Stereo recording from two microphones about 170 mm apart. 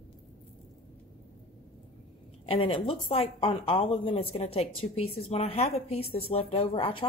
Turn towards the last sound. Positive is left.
turn(degrees=30)  # may be behind; listen again after turning